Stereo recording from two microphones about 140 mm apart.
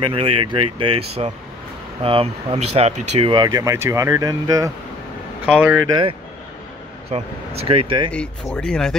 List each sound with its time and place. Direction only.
0.0 s speech: 35° right (ahead or behind)
3.3 s speech: 30° right (ahead or behind)
5.4 s speech: 10° right (ahead or behind)
5.9 s speech: 35° right (ahead or behind)
7.1 s speech: 45° right (ahead or behind)
8.1 s speech: 5° left (ahead or behind)